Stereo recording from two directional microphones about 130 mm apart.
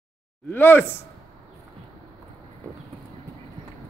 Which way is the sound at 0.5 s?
15° left (ahead or behind).